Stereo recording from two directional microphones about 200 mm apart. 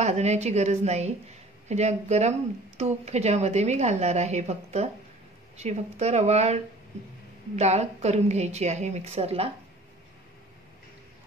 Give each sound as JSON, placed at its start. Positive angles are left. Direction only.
{"t": 0.0, "sound": "a woman's voice", "side_deg": -35}